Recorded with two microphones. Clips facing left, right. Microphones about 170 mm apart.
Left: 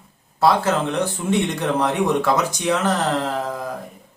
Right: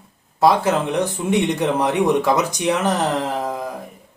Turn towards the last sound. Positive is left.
turn(degrees=-15)  # may be behind; listen again after turning